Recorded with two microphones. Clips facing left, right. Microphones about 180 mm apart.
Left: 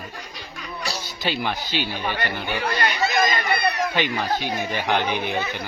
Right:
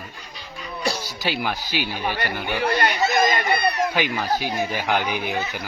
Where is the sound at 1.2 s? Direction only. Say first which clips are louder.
Even; 10° right (ahead or behind).